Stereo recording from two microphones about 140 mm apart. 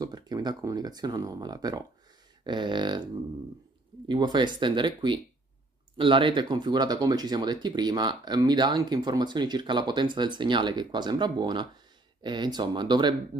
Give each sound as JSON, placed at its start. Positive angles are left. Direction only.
{"t": 0.0, "sound": "speech", "side_deg": -30}
{"t": 4.1, "sound": "speech", "side_deg": -30}